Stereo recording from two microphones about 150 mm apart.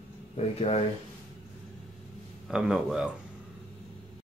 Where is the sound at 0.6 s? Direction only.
45° left (ahead or behind).